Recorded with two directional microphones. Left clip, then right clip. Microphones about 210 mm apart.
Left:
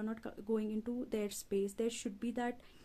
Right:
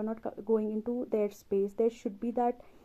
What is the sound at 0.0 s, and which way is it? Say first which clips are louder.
Speech: right 8 dB; 20° left (ahead or behind).